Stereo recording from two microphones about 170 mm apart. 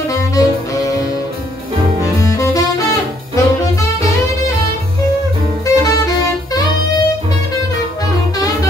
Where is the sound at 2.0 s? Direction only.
20° left (ahead or behind).